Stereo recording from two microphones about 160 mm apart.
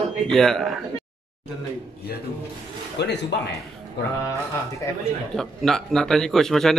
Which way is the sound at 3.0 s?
90° left.